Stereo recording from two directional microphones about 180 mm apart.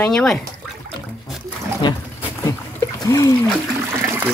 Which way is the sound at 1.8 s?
25° left (ahead or behind).